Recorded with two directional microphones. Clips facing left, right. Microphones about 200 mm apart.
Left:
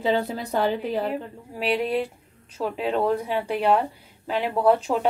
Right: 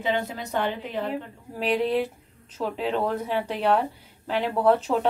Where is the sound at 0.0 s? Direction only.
35° left (ahead or behind).